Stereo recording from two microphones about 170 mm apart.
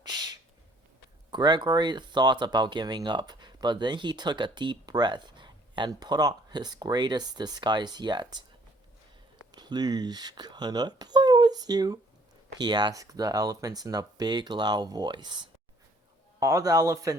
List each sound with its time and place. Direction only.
0.0 s owl: 25° right (ahead or behind)
1.3 s speech: 25° right (ahead or behind)
9.6 s speech: 25° right (ahead or behind)